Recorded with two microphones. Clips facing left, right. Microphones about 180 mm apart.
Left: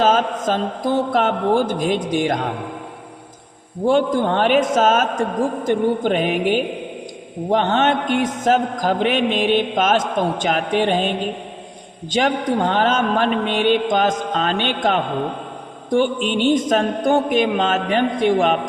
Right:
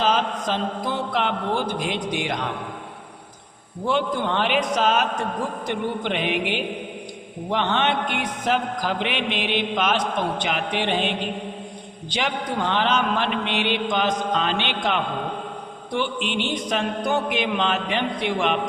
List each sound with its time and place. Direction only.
0.0 s a man's voice: 45° left (ahead or behind)
3.8 s a man's voice: 45° left (ahead or behind)